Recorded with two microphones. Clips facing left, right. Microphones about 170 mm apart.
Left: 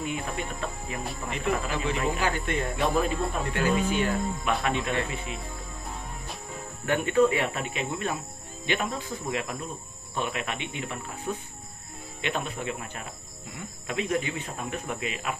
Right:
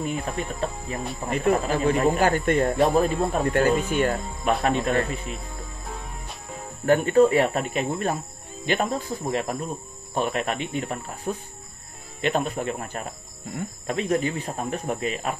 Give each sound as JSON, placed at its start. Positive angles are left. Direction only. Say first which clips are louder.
{"t": 0.0, "sound": "speech", "louder": "right 4 dB", "side_deg": -40}
{"t": 7.1, "sound": "speech", "louder": "right 3 dB", "side_deg": -40}